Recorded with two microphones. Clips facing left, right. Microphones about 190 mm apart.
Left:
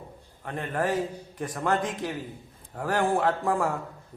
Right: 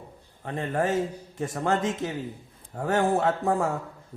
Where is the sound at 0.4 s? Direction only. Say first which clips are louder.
Right 2 dB; 25° right (ahead or behind).